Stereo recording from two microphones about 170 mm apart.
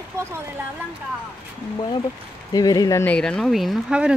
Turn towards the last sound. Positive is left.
turn(degrees=-5)  # may be behind; listen again after turning